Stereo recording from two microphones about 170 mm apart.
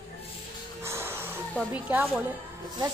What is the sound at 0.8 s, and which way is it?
Music, 15° right (ahead or behind).